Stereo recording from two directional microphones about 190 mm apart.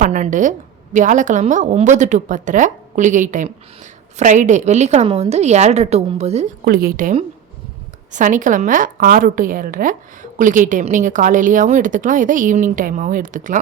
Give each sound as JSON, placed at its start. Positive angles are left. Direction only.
{"t": 0.0, "sound": "a woman's voice", "side_deg": -40}
{"t": 6.7, "sound": "a woman's voice", "side_deg": -50}
{"t": 8.1, "sound": "a woman's voice", "side_deg": -40}